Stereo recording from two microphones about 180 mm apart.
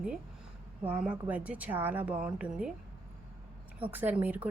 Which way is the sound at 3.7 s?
10° right (ahead or behind).